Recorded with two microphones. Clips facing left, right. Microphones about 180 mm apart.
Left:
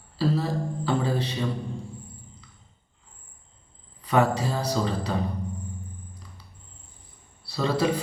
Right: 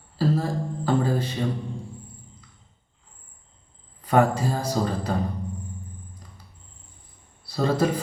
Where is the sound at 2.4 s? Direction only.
50° right (ahead or behind).